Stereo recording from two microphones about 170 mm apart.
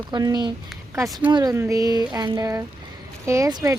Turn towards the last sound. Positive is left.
turn(degrees=-20)  # may be behind; listen again after turning